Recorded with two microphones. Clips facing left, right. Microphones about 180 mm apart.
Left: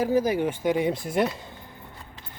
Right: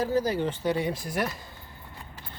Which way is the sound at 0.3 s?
15° left (ahead or behind).